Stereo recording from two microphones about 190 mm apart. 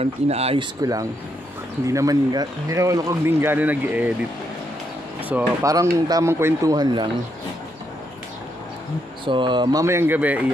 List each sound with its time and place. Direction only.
0.0 s speech: 30° right (ahead or behind)
1.9 s speech: 15° right (ahead or behind)
5.3 s speech: 15° right (ahead or behind)
9.2 s speech: 25° right (ahead or behind); by 10.4 s 10° right (ahead or behind)